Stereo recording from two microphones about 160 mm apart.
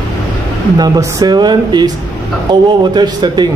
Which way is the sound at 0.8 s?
25° right (ahead or behind).